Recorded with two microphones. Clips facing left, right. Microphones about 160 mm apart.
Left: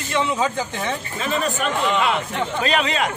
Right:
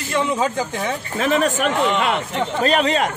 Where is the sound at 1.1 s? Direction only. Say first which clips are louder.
Right 7 dB; 65° right (ahead or behind).